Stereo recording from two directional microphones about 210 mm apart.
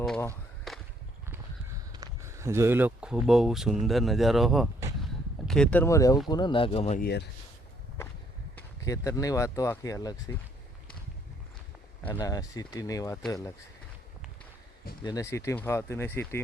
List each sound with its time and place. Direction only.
0.7 s whip: centre (ahead or behind)
1.9 s speech: 15° right (ahead or behind); by 7.0 s 30° left (ahead or behind)
7.0 s speech: 50° left (ahead or behind)
8.8 s speech: 15° left (ahead or behind)
12.2 s speech: 15° left (ahead or behind)
15.0 s speech: 15° left (ahead or behind)